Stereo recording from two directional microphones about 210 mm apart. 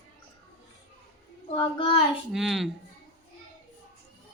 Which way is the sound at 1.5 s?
25° left (ahead or behind).